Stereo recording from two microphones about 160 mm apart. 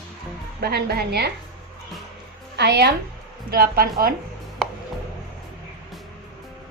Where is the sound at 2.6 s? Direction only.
90° right.